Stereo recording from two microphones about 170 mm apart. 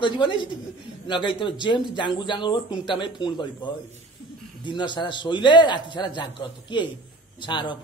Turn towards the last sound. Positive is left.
turn(degrees=25)  # may be behind; listen again after turning